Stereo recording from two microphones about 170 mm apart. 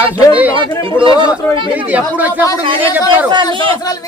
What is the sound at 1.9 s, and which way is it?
Speech, 10° right (ahead or behind).